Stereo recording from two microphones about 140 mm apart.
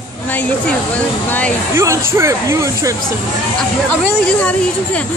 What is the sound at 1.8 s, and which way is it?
Speech, 20° right (ahead or behind).